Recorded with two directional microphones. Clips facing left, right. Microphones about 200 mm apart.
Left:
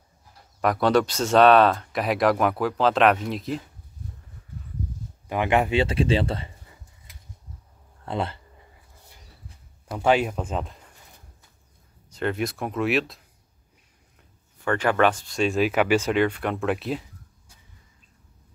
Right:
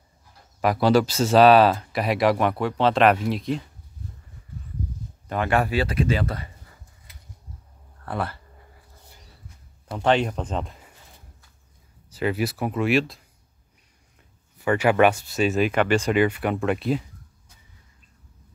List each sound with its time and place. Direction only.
0.6 s speech: 5° right (ahead or behind)
5.3 s speech: 15° left (ahead or behind)
8.0 s speech: 20° left (ahead or behind)
9.9 s speech: 5° left (ahead or behind)
12.1 s speech: 5° right (ahead or behind)
14.6 s speech: 10° right (ahead or behind)